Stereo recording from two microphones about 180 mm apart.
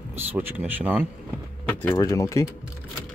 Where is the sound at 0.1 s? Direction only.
10° right (ahead or behind).